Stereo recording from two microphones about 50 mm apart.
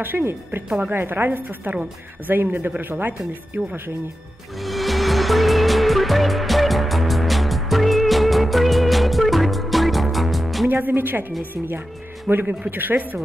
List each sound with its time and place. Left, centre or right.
0.9 s a woman's voice: right
4.6 s music: centre
10.7 s a woman's voice: right
12.4 s a woman's voice: right